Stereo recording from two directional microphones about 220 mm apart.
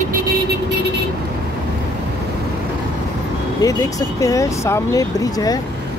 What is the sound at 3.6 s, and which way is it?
Speech, 15° left (ahead or behind).